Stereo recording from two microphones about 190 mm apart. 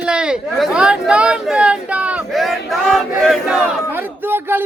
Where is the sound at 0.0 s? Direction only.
5° right (ahead or behind).